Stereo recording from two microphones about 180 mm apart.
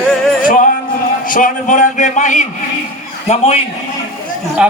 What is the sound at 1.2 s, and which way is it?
A man's voice, 50° left (ahead or behind).